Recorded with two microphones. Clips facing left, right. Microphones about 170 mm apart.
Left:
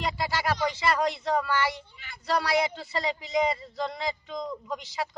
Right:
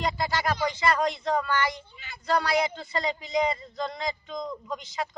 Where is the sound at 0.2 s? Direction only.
5° left (ahead or behind).